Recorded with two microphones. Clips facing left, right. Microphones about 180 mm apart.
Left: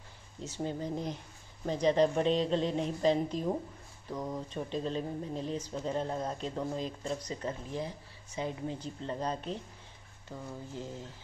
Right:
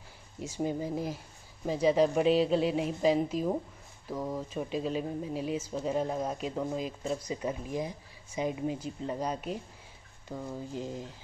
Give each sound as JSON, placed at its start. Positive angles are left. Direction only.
{"t": 0.4, "sound": "speech", "side_deg": -10}